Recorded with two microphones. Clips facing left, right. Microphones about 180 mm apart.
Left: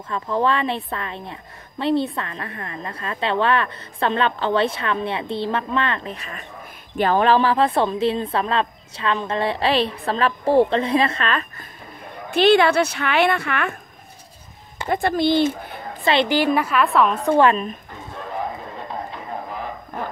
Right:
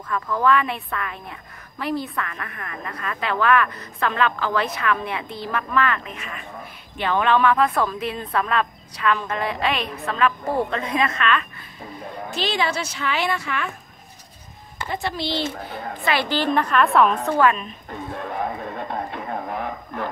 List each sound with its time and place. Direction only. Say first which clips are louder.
0.1 s a woman's voice: right 1 dB; 25° left (ahead or behind)
12.3 s a woman's voice: left 10 dB; 60° left (ahead or behind)
14.9 s a woman's voice: left 8 dB; 50° left (ahead or behind)
16.3 s a woman's voice: left 2 dB; 10° left (ahead or behind)
17.3 s a woman's voice: left 3 dB; 25° left (ahead or behind)